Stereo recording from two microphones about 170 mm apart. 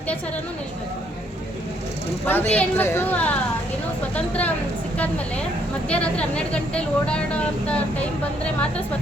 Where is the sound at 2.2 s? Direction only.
10° left (ahead or behind).